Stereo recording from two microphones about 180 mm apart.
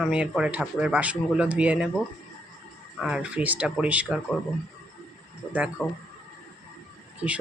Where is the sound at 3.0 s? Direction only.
5° right (ahead or behind).